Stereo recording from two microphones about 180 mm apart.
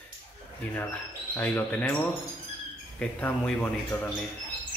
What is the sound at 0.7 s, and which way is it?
A man's voice, 10° left (ahead or behind).